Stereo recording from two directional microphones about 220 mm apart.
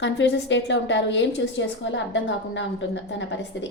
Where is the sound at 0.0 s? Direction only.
55° left (ahead or behind).